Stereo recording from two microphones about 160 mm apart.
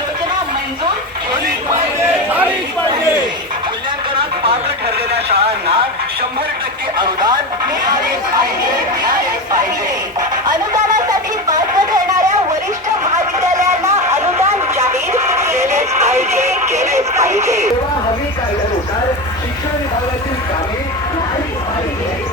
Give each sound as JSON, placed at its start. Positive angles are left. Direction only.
{"t": 7.0, "sound": "radio", "side_deg": -25}
{"t": 10.2, "sound": "music", "side_deg": -25}
{"t": 14.8, "sound": "a sound", "side_deg": -20}
{"t": 16.0, "sound": "radio", "side_deg": -15}